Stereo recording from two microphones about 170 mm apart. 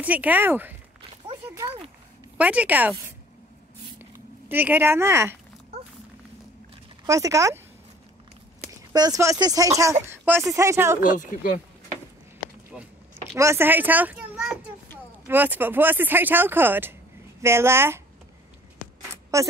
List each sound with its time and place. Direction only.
0.0 s speech: 10° right (ahead or behind)
7.1 s speech: 20° right (ahead or behind)
8.9 s speech: 20° right (ahead or behind)
11.0 s speech: 50° left (ahead or behind)
12.7 s speech: 5° right (ahead or behind)
13.4 s a child's voice: 15° right (ahead or behind)
19.3 s speech: 20° right (ahead or behind)